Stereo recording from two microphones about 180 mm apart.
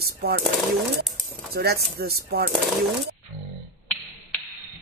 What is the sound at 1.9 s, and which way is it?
Speech, 60° right (ahead or behind).